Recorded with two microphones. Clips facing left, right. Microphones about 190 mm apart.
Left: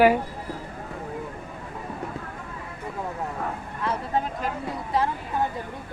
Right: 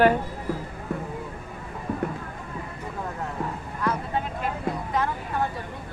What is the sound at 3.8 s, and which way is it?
Vehicle, 25° left (ahead or behind).